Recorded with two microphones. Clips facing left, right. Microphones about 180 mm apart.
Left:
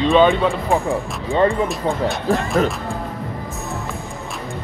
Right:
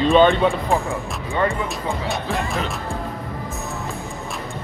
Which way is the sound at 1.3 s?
35° left (ahead or behind).